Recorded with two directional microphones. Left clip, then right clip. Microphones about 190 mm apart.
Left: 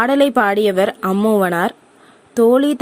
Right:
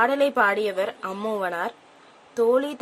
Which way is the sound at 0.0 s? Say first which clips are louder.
Left 6 dB; 40° left (ahead or behind).